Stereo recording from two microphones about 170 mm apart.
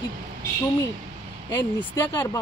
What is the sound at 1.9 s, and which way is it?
Speech, 25° left (ahead or behind).